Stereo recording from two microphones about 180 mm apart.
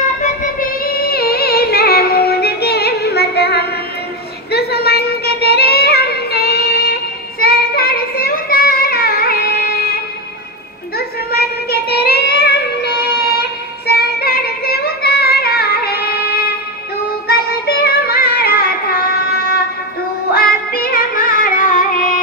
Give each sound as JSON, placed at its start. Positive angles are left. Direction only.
{"t": 0.2, "sound": "music", "side_deg": 45}
{"t": 7.3, "sound": "child singing", "side_deg": 60}
{"t": 11.0, "sound": "child singing", "side_deg": 60}
{"t": 17.3, "sound": "music", "side_deg": 60}